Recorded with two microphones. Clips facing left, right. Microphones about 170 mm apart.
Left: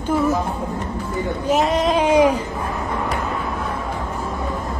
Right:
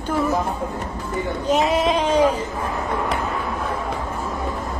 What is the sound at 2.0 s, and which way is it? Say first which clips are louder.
Speech: left 5 dB; 10° left (ahead or behind).